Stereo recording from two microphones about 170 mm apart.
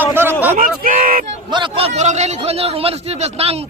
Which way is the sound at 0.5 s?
50° right (ahead or behind).